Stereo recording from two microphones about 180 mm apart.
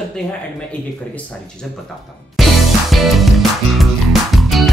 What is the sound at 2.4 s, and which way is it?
Music, centre (ahead or behind).